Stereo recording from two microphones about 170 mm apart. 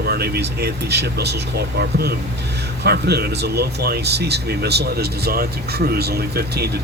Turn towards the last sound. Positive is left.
turn(degrees=-70)  # may be behind; listen again after turning